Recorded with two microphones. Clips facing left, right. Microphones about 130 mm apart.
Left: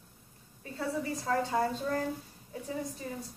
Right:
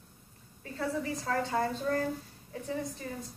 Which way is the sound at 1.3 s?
10° left (ahead or behind).